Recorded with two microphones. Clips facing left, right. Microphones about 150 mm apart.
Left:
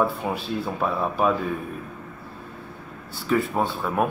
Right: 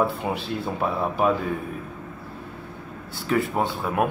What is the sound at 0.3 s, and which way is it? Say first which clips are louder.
Speech: even; 20° right (ahead or behind).